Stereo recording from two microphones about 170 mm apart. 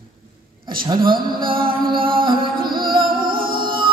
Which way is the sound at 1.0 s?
60° right (ahead or behind).